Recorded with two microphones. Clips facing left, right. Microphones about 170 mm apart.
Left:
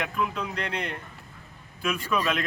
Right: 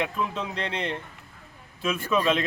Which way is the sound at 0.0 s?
25° right (ahead or behind).